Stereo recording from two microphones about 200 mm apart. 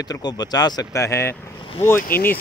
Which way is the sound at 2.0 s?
45° left (ahead or behind).